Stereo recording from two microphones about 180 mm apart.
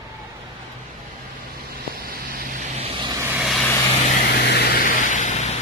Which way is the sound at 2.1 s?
55° right (ahead or behind).